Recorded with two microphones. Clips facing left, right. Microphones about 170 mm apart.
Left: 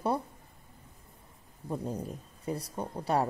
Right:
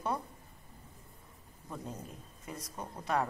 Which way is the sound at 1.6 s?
35° left (ahead or behind).